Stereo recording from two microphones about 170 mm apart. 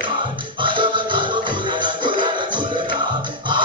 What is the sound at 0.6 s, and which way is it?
Music, 30° right (ahead or behind).